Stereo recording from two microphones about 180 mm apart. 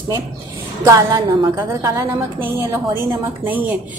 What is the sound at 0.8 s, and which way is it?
Speech, 20° right (ahead or behind).